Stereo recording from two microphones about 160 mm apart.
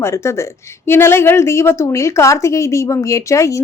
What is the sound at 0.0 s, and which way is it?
A woman's voice, 15° left (ahead or behind).